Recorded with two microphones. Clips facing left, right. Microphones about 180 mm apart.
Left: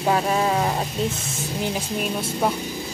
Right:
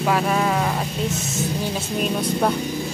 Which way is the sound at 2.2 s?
5° left (ahead or behind).